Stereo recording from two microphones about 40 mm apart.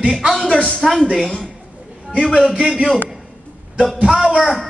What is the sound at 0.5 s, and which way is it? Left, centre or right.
Speech, left.